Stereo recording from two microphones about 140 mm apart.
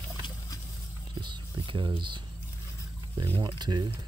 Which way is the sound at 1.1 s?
30° right (ahead or behind).